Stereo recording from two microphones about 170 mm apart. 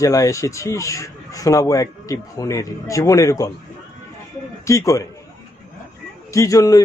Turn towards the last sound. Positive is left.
turn(degrees=20)  # may be behind; listen again after turning